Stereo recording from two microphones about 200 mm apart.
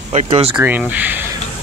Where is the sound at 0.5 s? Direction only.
5° right (ahead or behind).